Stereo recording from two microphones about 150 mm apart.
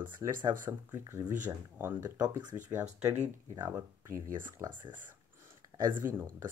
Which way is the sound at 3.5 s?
15° right (ahead or behind).